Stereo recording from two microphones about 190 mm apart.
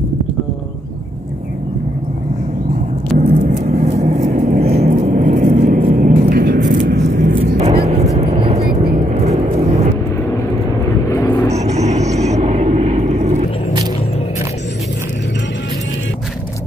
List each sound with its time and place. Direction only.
3.2 s vehicle: 40° right (ahead or behind)
4.6 s vehicle: 50° right (ahead or behind)
7.8 s vehicle: 35° right (ahead or behind)
11.1 s vehicle: 15° left (ahead or behind)
11.5 s vehicle: 35° right (ahead or behind)